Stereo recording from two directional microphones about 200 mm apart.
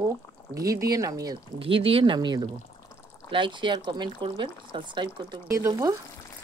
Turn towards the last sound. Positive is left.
turn(degrees=-15)  # may be behind; listen again after turning